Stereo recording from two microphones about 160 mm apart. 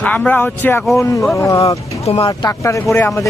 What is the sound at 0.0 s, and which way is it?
Speech, 10° left (ahead or behind).